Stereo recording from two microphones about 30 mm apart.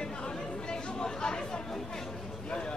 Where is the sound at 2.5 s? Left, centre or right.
Left.